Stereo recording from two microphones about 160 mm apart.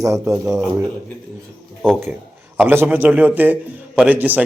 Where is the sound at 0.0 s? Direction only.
20° right (ahead or behind).